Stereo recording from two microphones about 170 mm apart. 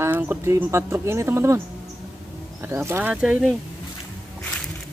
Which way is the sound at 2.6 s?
15° right (ahead or behind).